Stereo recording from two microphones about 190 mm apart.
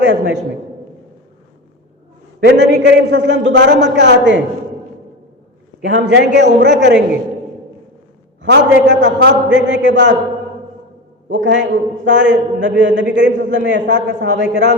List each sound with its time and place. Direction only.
0.0 s a man's voice: 70° right (ahead or behind)
2.4 s a man's voice: 65° right (ahead or behind)
5.8 s a man's voice: 70° right (ahead or behind)
8.4 s a man's voice: 70° right (ahead or behind)
11.3 s a man's voice: 70° right (ahead or behind)